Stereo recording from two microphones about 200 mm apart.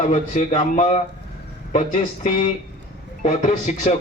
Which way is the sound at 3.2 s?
35° left (ahead or behind).